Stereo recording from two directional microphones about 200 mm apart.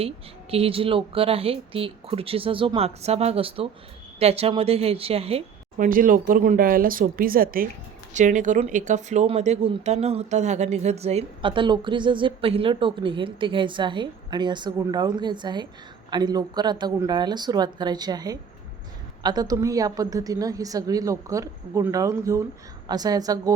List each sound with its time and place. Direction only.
0.5 s a woman's voice: 30° right (ahead or behind)